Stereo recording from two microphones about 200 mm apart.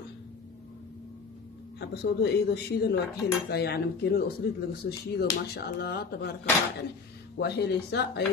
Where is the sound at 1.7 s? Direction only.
60° left (ahead or behind).